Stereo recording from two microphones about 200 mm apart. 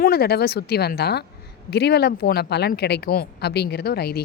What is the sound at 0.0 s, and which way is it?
Speech, 50° left (ahead or behind).